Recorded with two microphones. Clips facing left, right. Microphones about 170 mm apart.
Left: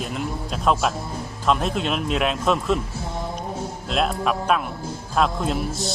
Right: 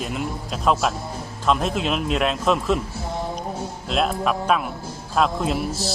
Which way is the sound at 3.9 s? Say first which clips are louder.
Right 1 dB; centre (ahead or behind).